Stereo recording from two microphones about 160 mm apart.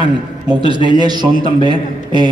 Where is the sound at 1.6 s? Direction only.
25° right (ahead or behind).